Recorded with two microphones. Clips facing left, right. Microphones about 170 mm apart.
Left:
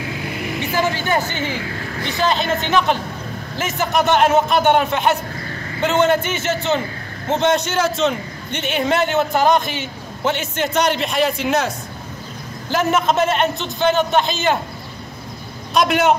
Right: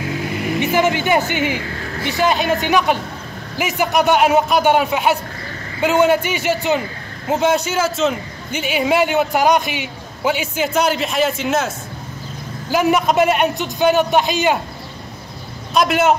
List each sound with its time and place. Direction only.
0.6 s a man's voice: 20° right (ahead or behind)
15.7 s a man's voice: centre (ahead or behind)